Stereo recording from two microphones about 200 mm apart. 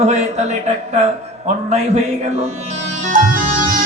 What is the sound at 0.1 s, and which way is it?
Speech, 35° right (ahead or behind).